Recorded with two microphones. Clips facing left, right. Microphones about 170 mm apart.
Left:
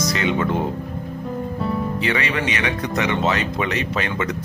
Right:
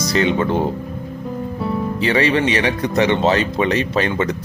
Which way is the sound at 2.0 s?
30° right (ahead or behind).